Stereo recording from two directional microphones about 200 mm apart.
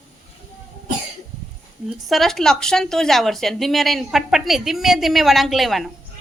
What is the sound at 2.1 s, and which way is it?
A woman's voice, centre (ahead or behind).